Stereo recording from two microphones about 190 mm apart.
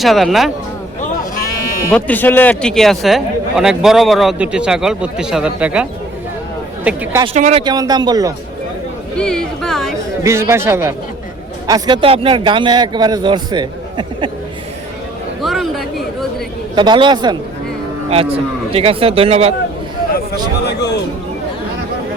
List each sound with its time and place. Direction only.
0.0 s a man's voice: centre (ahead or behind)
1.9 s a man's voice: 5° left (ahead or behind); by 7.2 s 10° right (ahead or behind)
7.3 s speech: 40° right (ahead or behind)
7.6 s a man's voice: 20° right (ahead or behind)
9.1 s a man's voice: 5° left (ahead or behind)
10.2 s speech: 15° right (ahead or behind)
11.7 s a man's voice: 25° right (ahead or behind)
15.4 s a sound: centre (ahead or behind)
16.7 s a man's voice: 25° right (ahead or behind)
20.7 s speech: 65° left (ahead or behind)